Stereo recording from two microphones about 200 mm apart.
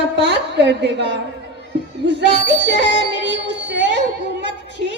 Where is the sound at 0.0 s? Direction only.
60° right (ahead or behind).